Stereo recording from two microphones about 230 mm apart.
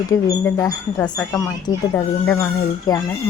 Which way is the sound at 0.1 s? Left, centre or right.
Centre.